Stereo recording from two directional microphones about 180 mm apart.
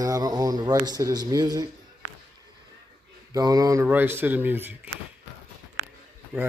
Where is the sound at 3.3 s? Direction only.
20° right (ahead or behind).